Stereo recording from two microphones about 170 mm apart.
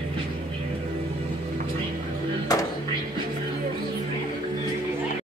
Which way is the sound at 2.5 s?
20° left (ahead or behind).